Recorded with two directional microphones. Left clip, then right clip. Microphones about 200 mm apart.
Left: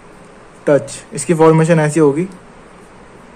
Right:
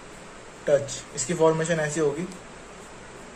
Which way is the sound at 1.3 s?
50° left (ahead or behind).